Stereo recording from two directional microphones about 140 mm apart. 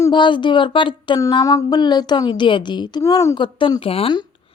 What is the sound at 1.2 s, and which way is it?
Speech, 25° left (ahead or behind).